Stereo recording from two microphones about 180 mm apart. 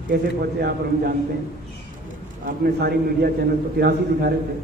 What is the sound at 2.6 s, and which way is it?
A man's voice, 60° right (ahead or behind).